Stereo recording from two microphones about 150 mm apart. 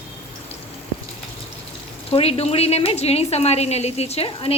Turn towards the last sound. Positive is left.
turn(degrees=40)  # may be behind; listen again after turning